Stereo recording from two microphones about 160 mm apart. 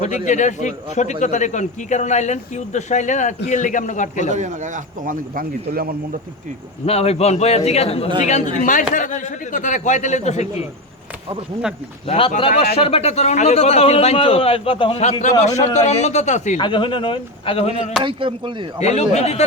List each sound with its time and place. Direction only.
0.0 s a man's voice: 50° left (ahead or behind)
4.3 s a man's voice: 50° right (ahead or behind); by 5.9 s 65° right (ahead or behind)
6.8 s a man's voice: 40° left (ahead or behind)
12.0 s a man's voice: 35° left (ahead or behind)
15.2 s a man's voice: 45° left (ahead or behind)
16.6 s a man's voice: 30° left (ahead or behind)
18.0 s speech: 30° right (ahead or behind)
18.8 s a man's voice: 45° left (ahead or behind)